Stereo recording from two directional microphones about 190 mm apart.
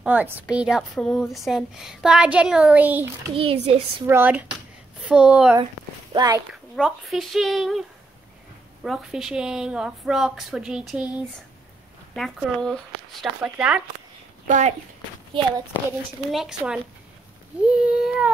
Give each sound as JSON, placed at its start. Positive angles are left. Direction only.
{"t": 0.0, "sound": "speech", "side_deg": -5}
{"t": 3.3, "sound": "a child's voice", "side_deg": -30}
{"t": 4.0, "sound": "speech", "side_deg": -10}
{"t": 6.1, "sound": "speech", "side_deg": -20}
{"t": 6.8, "sound": "speech", "side_deg": 0}
{"t": 8.8, "sound": "speech", "side_deg": 0}
{"t": 12.2, "sound": "speech", "side_deg": 0}
{"t": 16.3, "sound": "speech", "side_deg": 0}